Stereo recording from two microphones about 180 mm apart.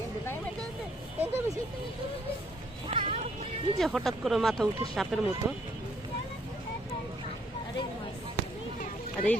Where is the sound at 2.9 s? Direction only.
30° right (ahead or behind).